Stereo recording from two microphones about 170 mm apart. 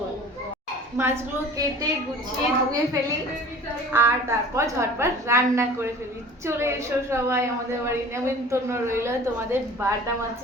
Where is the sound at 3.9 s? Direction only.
15° right (ahead or behind).